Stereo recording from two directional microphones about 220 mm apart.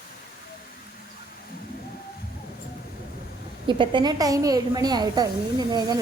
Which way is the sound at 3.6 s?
20° right (ahead or behind).